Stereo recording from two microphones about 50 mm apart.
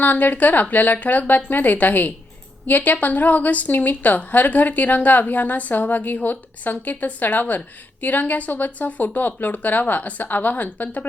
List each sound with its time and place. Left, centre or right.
0.0 s a woman's voice: left